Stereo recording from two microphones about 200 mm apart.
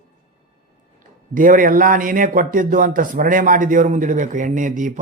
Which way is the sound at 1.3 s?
40° right (ahead or behind).